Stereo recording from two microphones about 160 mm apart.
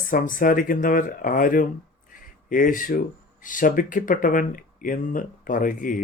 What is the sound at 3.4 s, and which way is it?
Speech, 55° left (ahead or behind).